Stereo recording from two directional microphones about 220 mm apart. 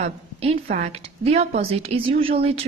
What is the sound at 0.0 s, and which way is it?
A woman's voice, 30° right (ahead or behind).